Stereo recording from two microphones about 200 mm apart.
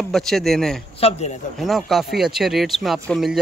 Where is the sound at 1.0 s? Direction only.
35° left (ahead or behind).